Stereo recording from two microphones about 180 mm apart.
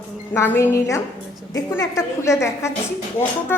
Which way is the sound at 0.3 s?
15° left (ahead or behind).